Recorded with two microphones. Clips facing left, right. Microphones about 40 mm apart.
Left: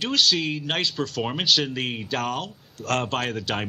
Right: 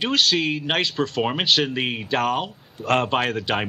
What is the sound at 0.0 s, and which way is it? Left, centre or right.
Speech, centre.